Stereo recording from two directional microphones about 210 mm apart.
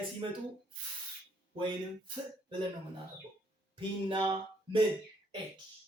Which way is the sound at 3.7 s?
25° right (ahead or behind).